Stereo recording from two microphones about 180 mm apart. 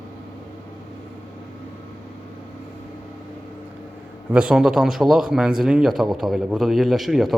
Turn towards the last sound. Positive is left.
turn(degrees=0)  # may be behind; listen again after turning